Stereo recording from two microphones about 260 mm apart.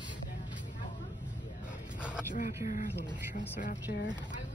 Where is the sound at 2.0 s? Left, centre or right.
Centre.